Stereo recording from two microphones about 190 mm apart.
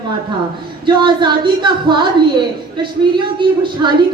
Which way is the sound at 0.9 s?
25° right (ahead or behind).